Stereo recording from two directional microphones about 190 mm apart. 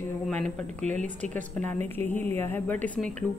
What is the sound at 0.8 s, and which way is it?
Speech, 40° right (ahead or behind).